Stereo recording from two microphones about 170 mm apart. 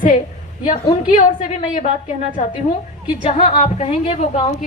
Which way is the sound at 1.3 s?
40° left (ahead or behind).